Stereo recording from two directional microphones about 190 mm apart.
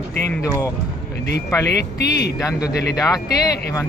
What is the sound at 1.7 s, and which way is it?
Speech, 60° left (ahead or behind).